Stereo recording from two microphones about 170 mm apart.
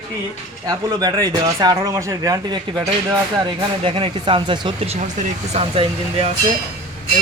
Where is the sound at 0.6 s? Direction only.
20° right (ahead or behind).